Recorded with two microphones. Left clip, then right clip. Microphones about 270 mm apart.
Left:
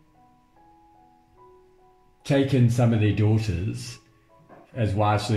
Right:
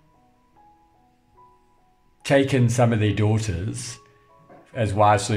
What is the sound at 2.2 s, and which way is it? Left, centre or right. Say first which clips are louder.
Speech: right 4 dB; right.